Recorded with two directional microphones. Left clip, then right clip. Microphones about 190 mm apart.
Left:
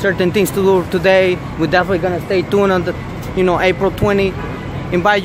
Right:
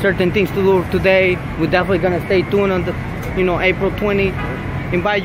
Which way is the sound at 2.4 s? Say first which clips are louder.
Left 3 dB; 15° left (ahead or behind).